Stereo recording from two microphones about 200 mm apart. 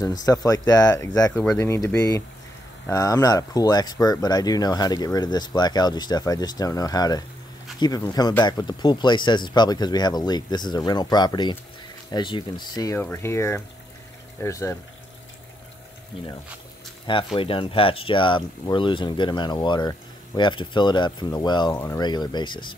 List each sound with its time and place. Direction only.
0.0 s speech: 20° left (ahead or behind)
1.3 s speech: 5° left (ahead or behind)
17.0 s speech: 25° left (ahead or behind)